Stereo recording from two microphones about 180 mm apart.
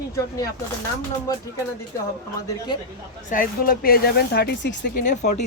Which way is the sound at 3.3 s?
50° left (ahead or behind).